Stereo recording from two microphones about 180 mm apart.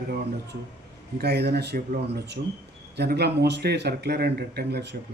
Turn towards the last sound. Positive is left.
turn(degrees=-65)  # may be behind; listen again after turning